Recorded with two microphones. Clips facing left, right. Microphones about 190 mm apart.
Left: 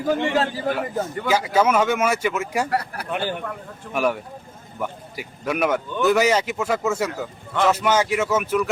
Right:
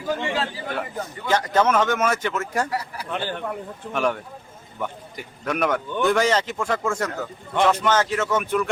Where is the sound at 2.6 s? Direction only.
60° left (ahead or behind).